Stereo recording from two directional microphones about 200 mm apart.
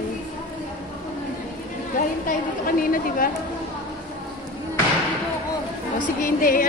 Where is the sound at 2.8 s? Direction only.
45° left (ahead or behind).